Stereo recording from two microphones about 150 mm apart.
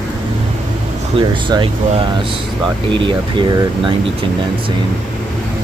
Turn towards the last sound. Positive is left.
turn(degrees=-35)  # may be behind; listen again after turning